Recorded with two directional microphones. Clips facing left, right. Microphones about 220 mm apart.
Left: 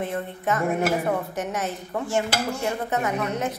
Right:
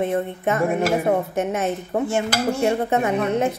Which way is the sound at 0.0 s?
25° right (ahead or behind).